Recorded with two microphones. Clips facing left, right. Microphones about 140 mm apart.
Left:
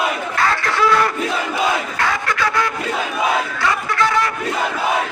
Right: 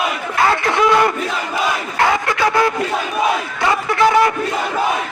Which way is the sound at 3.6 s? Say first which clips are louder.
Right 8 dB; 25° right (ahead or behind).